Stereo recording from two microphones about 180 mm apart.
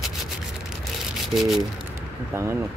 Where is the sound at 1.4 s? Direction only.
Centre (ahead or behind).